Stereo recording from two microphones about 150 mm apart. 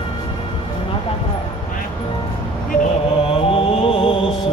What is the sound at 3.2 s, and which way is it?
Mantra, 40° left (ahead or behind).